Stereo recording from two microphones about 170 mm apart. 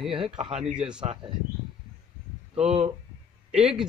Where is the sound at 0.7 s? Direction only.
5° right (ahead or behind).